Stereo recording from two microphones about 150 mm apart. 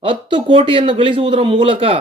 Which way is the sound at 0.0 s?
35° right (ahead or behind).